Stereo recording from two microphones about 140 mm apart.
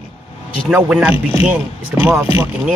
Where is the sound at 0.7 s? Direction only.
5° right (ahead or behind).